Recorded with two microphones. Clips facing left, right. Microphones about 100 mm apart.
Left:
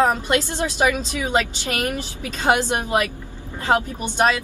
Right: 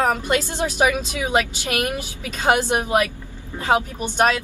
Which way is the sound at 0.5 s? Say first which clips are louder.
Right 1 dB; 15° right (ahead or behind).